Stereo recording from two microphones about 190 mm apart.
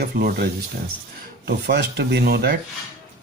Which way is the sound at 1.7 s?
55° right (ahead or behind).